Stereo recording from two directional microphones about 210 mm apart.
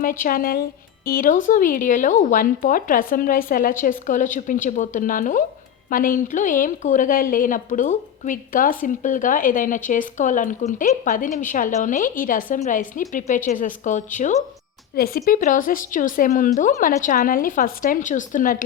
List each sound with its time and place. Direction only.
0.0 s speech: 40° left (ahead or behind)
14.9 s speech: 45° left (ahead or behind)
15.2 s speech: 35° left (ahead or behind)